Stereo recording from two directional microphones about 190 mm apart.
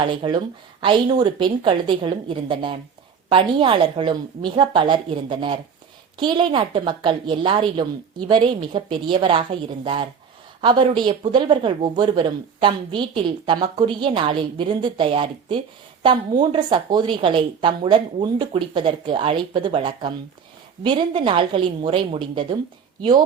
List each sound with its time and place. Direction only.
0.0 s speech: 25° right (ahead or behind)